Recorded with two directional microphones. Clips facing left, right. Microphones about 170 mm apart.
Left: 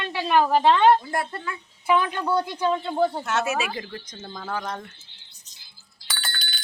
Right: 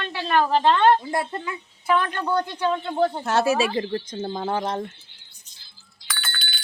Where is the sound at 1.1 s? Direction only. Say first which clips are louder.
Right 2 dB; 20° right (ahead or behind).